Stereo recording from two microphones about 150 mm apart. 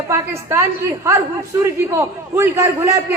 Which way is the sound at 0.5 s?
15° right (ahead or behind).